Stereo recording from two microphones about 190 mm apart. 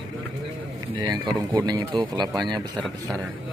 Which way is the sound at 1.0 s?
20° right (ahead or behind).